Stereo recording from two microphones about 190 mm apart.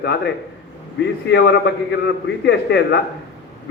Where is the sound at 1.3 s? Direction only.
65° left (ahead or behind).